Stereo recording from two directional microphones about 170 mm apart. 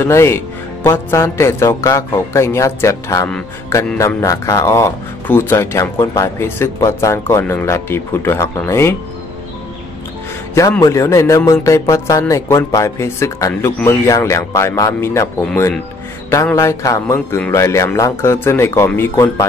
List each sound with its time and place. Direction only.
0.0 s speech: 15° left (ahead or behind)
10.8 s speech: 20° left (ahead or behind)